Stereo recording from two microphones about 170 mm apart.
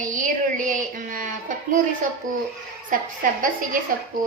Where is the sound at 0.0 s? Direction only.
50° right (ahead or behind).